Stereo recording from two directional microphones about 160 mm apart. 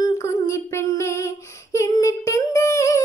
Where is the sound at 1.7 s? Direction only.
20° left (ahead or behind).